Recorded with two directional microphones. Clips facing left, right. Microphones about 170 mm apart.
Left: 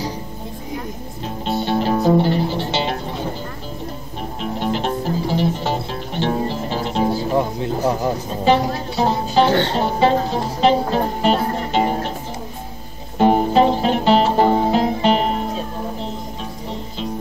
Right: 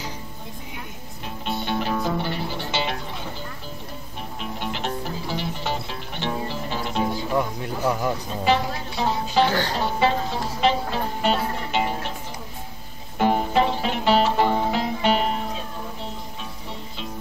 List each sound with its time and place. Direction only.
1.4 s music: 35° left (ahead or behind)
4.6 s music: 35° left (ahead or behind)
10.0 s music: 40° left (ahead or behind)
13.2 s music: 30° left (ahead or behind)